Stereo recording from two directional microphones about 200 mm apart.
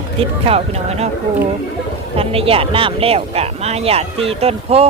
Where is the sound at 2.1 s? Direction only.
30° right (ahead or behind).